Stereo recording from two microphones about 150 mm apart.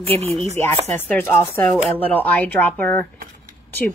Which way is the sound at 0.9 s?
15° left (ahead or behind).